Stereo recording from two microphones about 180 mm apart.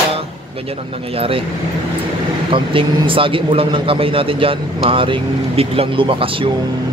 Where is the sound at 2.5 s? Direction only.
30° right (ahead or behind).